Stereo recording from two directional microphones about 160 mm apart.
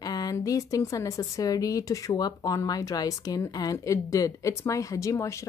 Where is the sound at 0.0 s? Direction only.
25° left (ahead or behind).